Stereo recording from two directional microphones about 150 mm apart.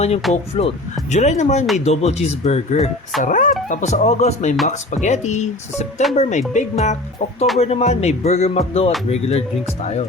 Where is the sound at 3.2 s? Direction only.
60° left (ahead or behind).